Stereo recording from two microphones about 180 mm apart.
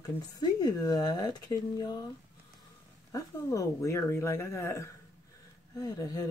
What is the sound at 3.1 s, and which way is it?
Speech, 15° left (ahead or behind).